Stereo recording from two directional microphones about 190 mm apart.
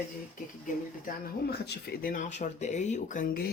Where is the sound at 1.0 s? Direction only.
55° left (ahead or behind).